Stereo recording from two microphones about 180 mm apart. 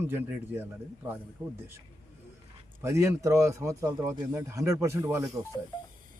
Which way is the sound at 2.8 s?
15° right (ahead or behind).